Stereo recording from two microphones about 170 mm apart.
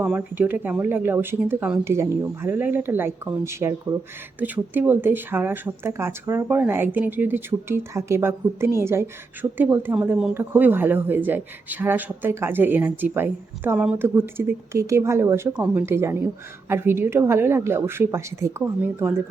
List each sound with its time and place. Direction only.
0.0 s speech: 10° right (ahead or behind)